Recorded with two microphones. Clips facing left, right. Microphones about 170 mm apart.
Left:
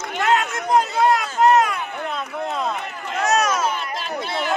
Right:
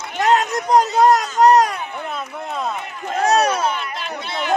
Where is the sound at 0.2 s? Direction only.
40° right (ahead or behind).